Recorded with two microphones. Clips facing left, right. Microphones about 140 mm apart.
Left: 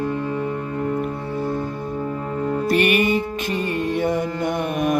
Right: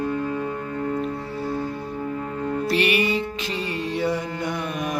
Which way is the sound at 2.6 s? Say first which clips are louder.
Left 4 dB; 50° left (ahead or behind).